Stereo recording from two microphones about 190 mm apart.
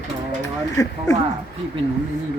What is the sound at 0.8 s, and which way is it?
Speech, 20° left (ahead or behind).